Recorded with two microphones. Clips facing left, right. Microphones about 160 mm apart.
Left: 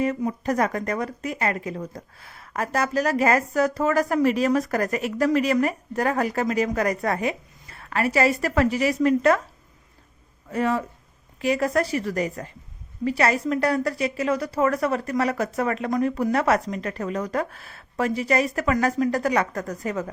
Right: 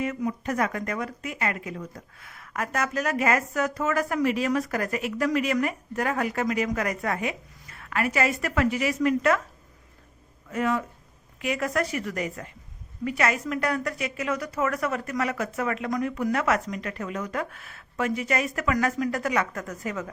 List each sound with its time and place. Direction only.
0.0 s speech: 35° left (ahead or behind)
10.5 s speech: 35° left (ahead or behind)